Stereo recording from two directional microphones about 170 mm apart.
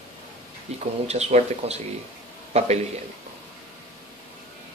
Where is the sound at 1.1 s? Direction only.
40° right (ahead or behind).